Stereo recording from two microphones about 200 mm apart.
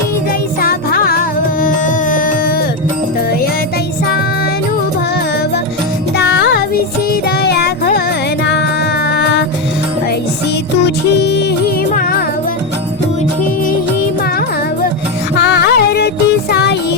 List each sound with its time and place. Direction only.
0.6 s music: 50° left (ahead or behind)
6.1 s music: 60° left (ahead or behind)
7.4 s music: 50° left (ahead or behind)
10.8 s music: 50° left (ahead or behind)
15.4 s music: 55° left (ahead or behind)